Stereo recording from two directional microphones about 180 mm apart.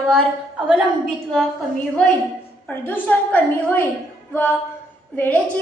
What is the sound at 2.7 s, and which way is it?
A woman's voice, 10° left (ahead or behind).